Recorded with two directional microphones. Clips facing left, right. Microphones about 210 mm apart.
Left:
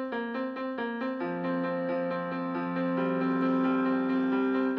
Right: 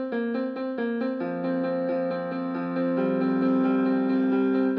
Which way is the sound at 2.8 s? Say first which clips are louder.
Right 5 dB; 40° right (ahead or behind).